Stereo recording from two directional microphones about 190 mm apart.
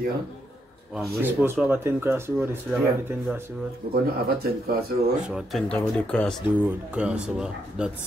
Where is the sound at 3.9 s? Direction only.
55° right (ahead or behind).